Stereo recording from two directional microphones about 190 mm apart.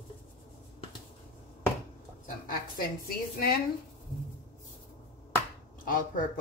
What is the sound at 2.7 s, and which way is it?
Speech, 50° left (ahead or behind).